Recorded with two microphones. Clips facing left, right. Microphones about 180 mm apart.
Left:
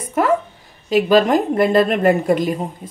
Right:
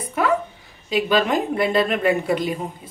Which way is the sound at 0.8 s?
45° left (ahead or behind).